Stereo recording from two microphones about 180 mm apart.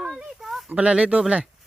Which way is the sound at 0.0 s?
5° right (ahead or behind).